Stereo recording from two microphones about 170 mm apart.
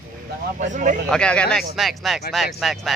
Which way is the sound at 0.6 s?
45° right (ahead or behind).